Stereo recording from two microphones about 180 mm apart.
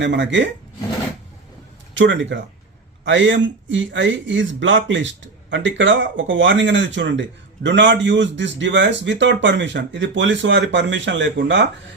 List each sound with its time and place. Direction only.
0.0 s speech: 80° right
2.0 s speech: 90° right